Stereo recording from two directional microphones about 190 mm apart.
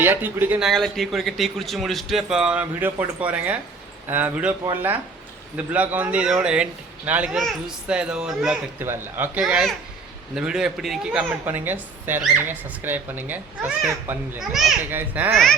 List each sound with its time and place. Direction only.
0.0 s a man's voice: 10° right (ahead or behind)